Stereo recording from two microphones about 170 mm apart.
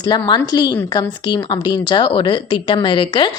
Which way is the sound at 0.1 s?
25° left (ahead or behind).